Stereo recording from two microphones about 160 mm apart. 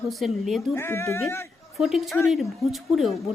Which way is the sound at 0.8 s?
15° left (ahead or behind).